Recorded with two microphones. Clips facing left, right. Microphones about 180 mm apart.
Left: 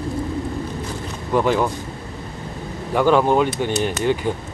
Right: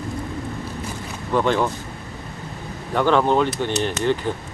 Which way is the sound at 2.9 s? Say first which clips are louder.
Left 2 dB; 10° left (ahead or behind).